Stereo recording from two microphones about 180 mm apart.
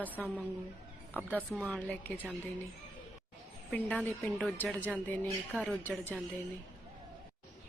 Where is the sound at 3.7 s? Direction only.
5° left (ahead or behind).